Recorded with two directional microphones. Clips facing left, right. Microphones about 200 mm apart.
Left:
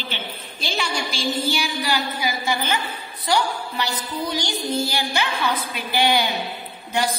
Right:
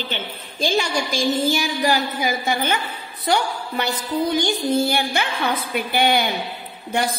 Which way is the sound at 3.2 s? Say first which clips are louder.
Right 1 dB; 55° right (ahead or behind).